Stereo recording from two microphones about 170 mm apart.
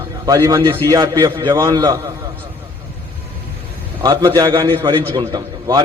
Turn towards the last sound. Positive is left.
turn(degrees=-25)  # may be behind; listen again after turning